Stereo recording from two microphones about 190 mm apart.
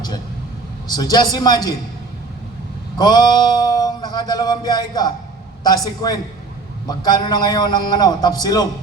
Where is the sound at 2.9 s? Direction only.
20° left (ahead or behind).